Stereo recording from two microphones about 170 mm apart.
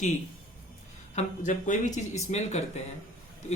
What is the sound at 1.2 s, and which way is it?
Speech, 50° left (ahead or behind).